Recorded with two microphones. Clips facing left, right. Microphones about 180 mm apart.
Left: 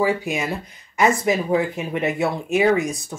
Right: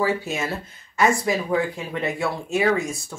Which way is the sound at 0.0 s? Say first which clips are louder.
Left 2 dB; 15° left (ahead or behind).